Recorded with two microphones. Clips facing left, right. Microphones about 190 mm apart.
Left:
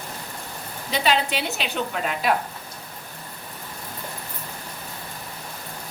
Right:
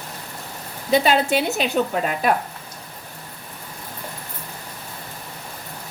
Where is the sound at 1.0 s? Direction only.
45° right (ahead or behind).